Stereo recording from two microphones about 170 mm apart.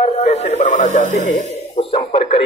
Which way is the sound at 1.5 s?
35° left (ahead or behind).